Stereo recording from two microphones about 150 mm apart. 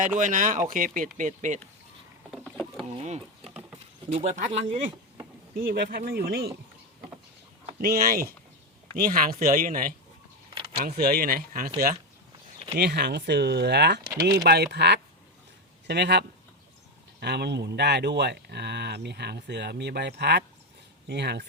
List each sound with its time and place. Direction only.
0.2 s speech: 60° right (ahead or behind)
2.4 s rowboat: 5° left (ahead or behind)
3.4 s a sound: 5° right (ahead or behind)
4.1 s speech: 55° right (ahead or behind)
5.5 s speech: 85° right
7.8 s speech: 85° right; by 9.9 s 65° right (ahead or behind)
10.5 s a sound: 35° right (ahead or behind)
10.8 s speech: 85° right
12.7 s speech: 90° right
17.2 s speech: 90° right